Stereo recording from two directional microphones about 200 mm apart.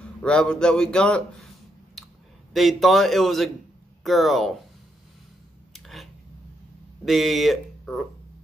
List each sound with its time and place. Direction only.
0.0 s a man's voice: 5° left (ahead or behind)
2.5 s a man's voice: centre (ahead or behind)
5.7 s a sound: centre (ahead or behind)
7.1 s speech: centre (ahead or behind)